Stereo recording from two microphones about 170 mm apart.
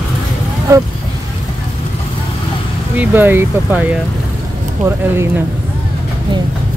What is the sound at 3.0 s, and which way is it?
Speech, 10° right (ahead or behind).